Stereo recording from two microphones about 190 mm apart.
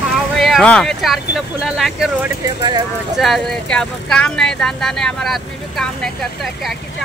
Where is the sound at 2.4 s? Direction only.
20° right (ahead or behind).